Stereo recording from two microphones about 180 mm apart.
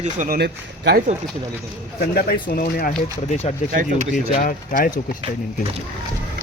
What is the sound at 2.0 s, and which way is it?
Speech, 60° left (ahead or behind).